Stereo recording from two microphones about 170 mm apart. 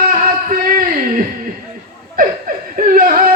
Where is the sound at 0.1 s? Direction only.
55° right (ahead or behind).